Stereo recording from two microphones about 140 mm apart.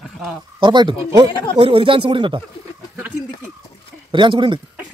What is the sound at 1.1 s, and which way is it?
Speech, 20° right (ahead or behind).